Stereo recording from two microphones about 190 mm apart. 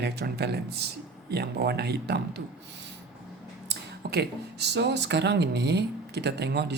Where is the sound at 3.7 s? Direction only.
60° right (ahead or behind).